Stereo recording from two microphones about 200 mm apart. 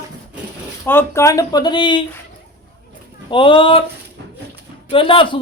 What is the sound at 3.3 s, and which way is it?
Speech, 25° left (ahead or behind).